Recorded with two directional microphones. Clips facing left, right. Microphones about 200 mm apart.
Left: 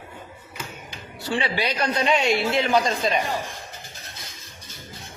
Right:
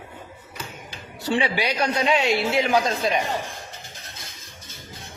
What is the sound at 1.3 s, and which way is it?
A man's voice, 15° right (ahead or behind).